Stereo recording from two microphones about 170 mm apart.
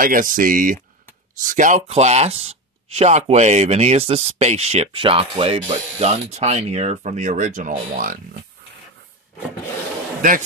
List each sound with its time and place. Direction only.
0.0 s speech: 55° right (ahead or behind)